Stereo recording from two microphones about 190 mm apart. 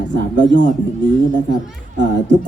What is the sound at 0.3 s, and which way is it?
Speech, 70° right (ahead or behind).